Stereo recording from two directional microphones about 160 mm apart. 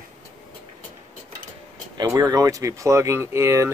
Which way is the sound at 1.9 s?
25° right (ahead or behind).